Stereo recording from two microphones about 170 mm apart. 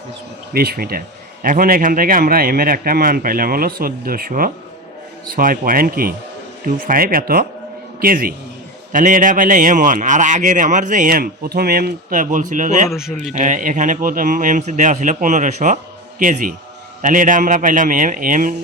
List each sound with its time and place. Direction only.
0.5 s a man's voice: 65° right (ahead or behind); by 12.9 s 50° right (ahead or behind)
12.9 s a man's voice: centre (ahead or behind)
13.3 s a man's voice: 50° right (ahead or behind)